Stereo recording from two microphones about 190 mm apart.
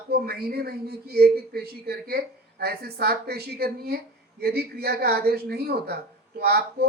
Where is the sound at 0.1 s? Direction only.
55° right (ahead or behind).